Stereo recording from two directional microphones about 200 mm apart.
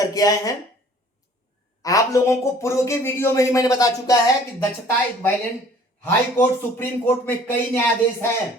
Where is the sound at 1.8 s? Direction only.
15° left (ahead or behind).